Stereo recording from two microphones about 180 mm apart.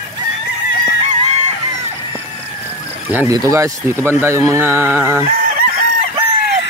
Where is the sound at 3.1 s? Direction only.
10° right (ahead or behind).